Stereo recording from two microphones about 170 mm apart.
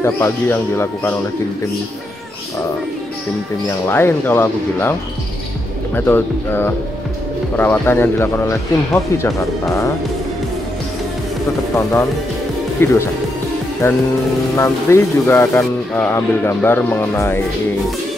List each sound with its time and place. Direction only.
0.0 s speech: 15° left (ahead or behind)
3.6 s speech: 15° left (ahead or behind)
5.9 s speech: 10° left (ahead or behind)
11.7 s speech: 15° left (ahead or behind)